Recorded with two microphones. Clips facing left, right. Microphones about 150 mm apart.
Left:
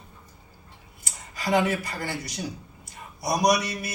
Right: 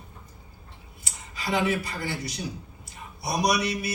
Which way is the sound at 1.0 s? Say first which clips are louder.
Left 3 dB; 50° left (ahead or behind).